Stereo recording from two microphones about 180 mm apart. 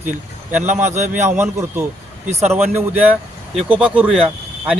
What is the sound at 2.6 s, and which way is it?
A man's voice, 10° right (ahead or behind).